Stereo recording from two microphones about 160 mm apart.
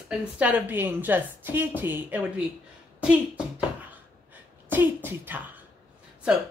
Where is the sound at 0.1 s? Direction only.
5° right (ahead or behind).